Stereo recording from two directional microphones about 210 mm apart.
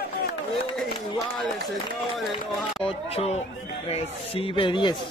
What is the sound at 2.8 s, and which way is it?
Speech, 30° left (ahead or behind).